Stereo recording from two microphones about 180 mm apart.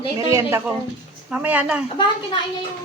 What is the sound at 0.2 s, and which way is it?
Speech, 15° right (ahead or behind).